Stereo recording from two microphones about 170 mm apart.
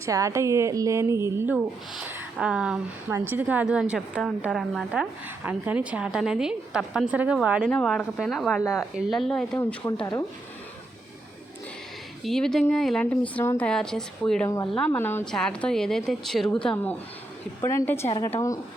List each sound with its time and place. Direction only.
0.0 s a woman's voice: 20° right (ahead or behind); by 9.6 s 5° left (ahead or behind)
12.2 s speech: 5° left (ahead or behind)
14.4 s speech: 20° left (ahead or behind)
14.7 s a woman's voice: 10° left (ahead or behind)